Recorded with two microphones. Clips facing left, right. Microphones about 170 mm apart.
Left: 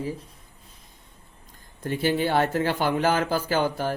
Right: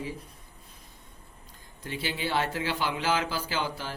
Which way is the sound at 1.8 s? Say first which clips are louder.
Left 9 dB; 50° left (ahead or behind).